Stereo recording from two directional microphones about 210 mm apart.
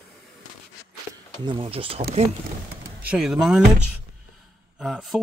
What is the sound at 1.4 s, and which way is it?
Speech, 25° right (ahead or behind).